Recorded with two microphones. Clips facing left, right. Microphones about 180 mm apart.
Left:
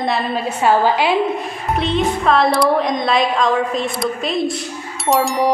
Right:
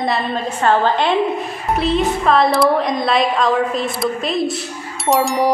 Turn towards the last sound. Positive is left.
turn(degrees=0)  # may be behind; listen again after turning